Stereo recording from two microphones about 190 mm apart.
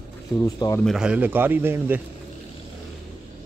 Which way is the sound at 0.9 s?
5° right (ahead or behind).